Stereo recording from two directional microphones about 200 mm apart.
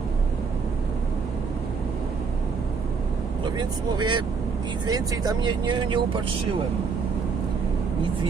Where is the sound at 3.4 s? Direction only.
20° right (ahead or behind).